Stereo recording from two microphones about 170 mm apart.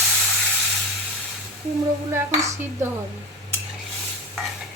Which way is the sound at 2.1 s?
15° right (ahead or behind).